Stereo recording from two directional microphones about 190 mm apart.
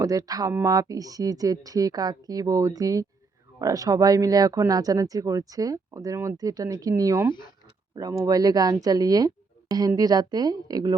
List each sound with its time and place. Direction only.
0.0 s speech: 20° right (ahead or behind)